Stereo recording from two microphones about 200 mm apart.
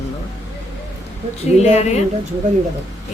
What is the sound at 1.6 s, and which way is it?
Speech, 35° left (ahead or behind).